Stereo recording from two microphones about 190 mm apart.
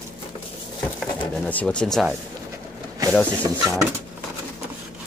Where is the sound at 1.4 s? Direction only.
5° left (ahead or behind).